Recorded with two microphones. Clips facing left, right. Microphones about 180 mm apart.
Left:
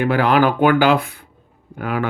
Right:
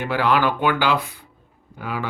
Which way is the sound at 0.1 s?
50° left (ahead or behind).